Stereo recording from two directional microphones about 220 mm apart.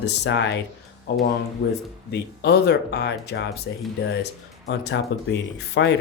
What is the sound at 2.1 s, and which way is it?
Speech, 50° left (ahead or behind).